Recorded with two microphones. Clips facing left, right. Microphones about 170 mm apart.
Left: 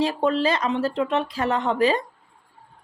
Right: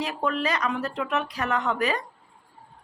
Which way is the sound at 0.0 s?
30° left (ahead or behind).